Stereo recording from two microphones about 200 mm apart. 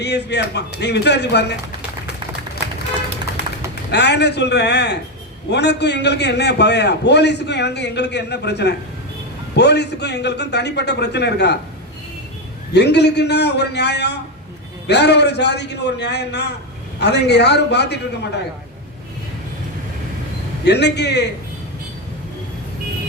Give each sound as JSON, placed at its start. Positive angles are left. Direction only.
{"t": 0.0, "sound": "a man's voice", "side_deg": 55}
{"t": 3.9, "sound": "a man's voice", "side_deg": 55}
{"t": 12.7, "sound": "a man's voice", "side_deg": 55}
{"t": 20.7, "sound": "a man's voice", "side_deg": 55}